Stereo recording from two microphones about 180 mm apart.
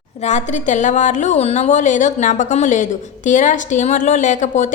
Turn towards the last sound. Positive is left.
turn(degrees=45)  # may be behind; listen again after turning